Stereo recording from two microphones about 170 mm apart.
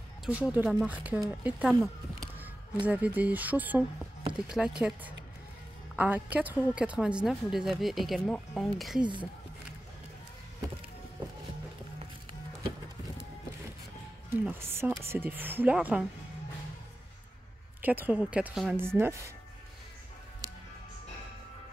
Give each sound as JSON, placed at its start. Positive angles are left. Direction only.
{"t": 0.2, "sound": "speech", "side_deg": -10}
{"t": 2.1, "sound": "a sound", "side_deg": -10}
{"t": 2.9, "sound": "a woman's voice", "side_deg": -10}
{"t": 14.3, "sound": "speech", "side_deg": -15}
{"t": 17.8, "sound": "speech", "side_deg": -10}